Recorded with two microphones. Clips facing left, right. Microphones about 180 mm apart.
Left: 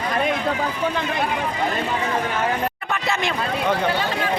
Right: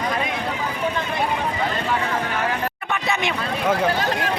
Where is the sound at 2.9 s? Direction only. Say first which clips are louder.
Right 2 dB; centre (ahead or behind).